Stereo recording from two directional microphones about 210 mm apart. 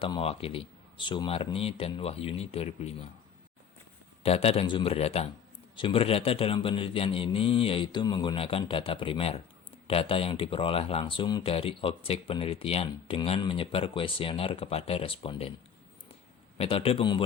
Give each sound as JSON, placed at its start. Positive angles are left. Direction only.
{"t": 0.0, "sound": "speech", "side_deg": 25}
{"t": 4.2, "sound": "speech", "side_deg": 30}
{"t": 16.6, "sound": "speech", "side_deg": 25}